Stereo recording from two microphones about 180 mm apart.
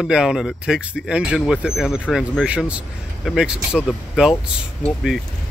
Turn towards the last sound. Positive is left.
turn(degrees=0)  # may be behind; listen again after turning